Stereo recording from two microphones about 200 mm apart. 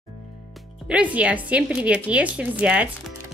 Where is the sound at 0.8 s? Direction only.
5° right (ahead or behind).